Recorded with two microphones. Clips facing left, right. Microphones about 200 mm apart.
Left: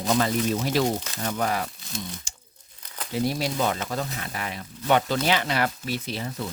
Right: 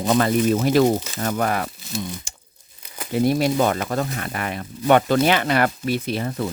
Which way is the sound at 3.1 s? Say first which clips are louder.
Right 7 dB; 55° right (ahead or behind).